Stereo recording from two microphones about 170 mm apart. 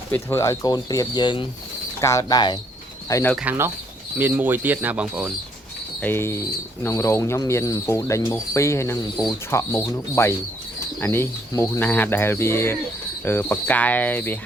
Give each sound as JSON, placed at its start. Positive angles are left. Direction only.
{"t": 0.1, "sound": "speech", "side_deg": 15}
{"t": 3.3, "sound": "speech", "side_deg": -10}
{"t": 6.0, "sound": "speech", "side_deg": 15}